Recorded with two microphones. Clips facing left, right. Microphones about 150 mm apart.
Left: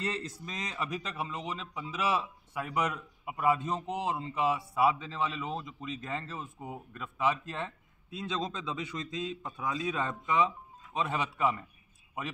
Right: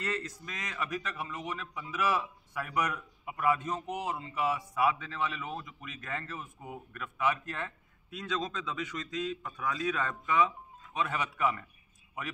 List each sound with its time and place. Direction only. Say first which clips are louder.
0.0 s speech: even; 30° left (ahead or behind)